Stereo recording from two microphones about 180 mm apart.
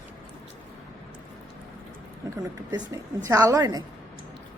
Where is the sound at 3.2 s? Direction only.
15° right (ahead or behind).